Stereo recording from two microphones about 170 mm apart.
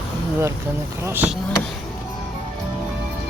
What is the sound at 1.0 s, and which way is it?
Speech, 10° right (ahead or behind).